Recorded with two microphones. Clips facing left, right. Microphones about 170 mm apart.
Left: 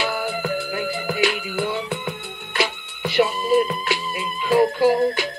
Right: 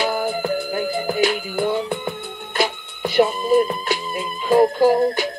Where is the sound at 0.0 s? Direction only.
40° right (ahead or behind).